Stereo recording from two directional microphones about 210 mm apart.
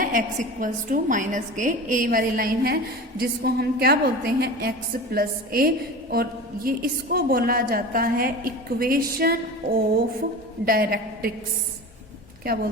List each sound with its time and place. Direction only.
0.0 s a woman's voice: 40° right (ahead or behind)
12.4 s a woman's voice: 45° right (ahead or behind)